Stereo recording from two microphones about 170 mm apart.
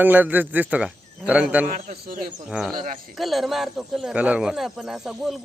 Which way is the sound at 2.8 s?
50° right (ahead or behind).